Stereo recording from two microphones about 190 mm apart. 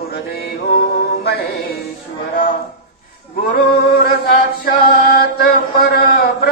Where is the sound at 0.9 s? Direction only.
60° left (ahead or behind).